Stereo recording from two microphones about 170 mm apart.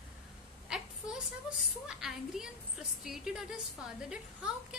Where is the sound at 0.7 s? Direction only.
5° right (ahead or behind).